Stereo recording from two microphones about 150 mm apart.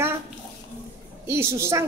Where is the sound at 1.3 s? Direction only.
20° right (ahead or behind).